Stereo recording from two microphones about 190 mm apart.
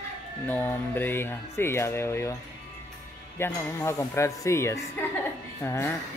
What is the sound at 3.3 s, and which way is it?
Speech, 15° left (ahead or behind).